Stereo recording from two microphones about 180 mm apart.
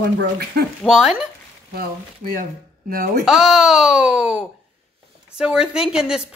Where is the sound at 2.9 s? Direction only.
50° right (ahead or behind).